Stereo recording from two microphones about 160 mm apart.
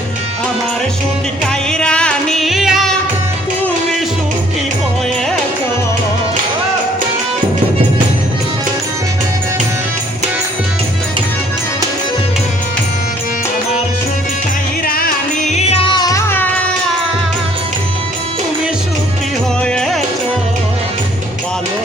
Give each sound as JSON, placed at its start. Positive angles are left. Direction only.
{"t": 1.7, "sound": "music", "side_deg": 5}
{"t": 14.8, "sound": "music", "side_deg": 65}
{"t": 15.4, "sound": "music", "side_deg": 40}
{"t": 19.6, "sound": "music", "side_deg": 5}